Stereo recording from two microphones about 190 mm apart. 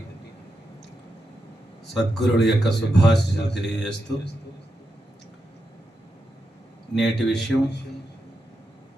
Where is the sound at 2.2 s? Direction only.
65° left (ahead or behind).